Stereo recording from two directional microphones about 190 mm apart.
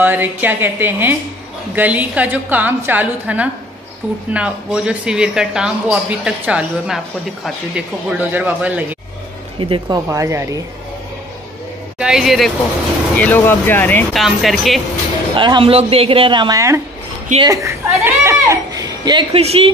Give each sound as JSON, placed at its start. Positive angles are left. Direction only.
{"t": 0.0, "sound": "a woman's voice", "side_deg": -10}
{"t": 9.6, "sound": "speech", "side_deg": -25}
{"t": 10.0, "sound": "a woman's voice", "side_deg": -15}
{"t": 12.0, "sound": "speech", "side_deg": -5}
{"t": 13.2, "sound": "speech", "side_deg": 10}
{"t": 15.3, "sound": "a child's voice", "side_deg": -25}